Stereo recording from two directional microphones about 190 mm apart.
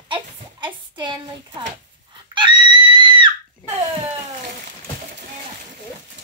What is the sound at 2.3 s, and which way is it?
Screaming, 25° right (ahead or behind).